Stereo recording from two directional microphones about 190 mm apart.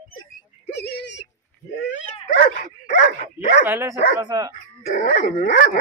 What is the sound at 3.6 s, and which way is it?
Speech, 15° right (ahead or behind).